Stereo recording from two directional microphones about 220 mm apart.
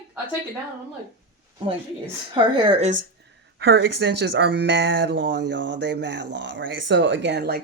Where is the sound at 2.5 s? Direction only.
25° right (ahead or behind).